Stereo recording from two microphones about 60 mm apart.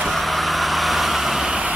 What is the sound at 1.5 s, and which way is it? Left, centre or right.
Vehicle, centre.